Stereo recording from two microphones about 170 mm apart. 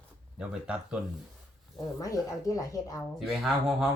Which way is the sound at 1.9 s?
20° left (ahead or behind).